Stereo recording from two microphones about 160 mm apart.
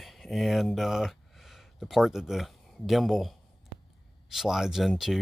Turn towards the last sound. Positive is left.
turn(degrees=0)  # may be behind; listen again after turning